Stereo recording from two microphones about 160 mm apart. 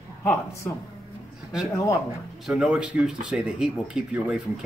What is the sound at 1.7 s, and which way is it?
Speech, 20° left (ahead or behind).